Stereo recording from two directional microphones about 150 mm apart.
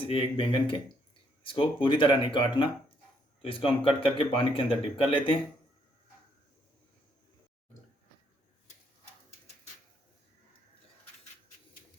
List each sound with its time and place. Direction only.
0.0 s speech: 35° left (ahead or behind)